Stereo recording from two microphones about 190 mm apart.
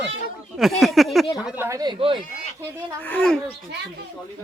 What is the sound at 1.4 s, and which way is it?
Speech, 10° right (ahead or behind).